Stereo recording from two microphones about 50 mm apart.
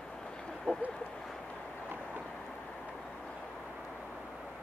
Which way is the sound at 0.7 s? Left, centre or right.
Left.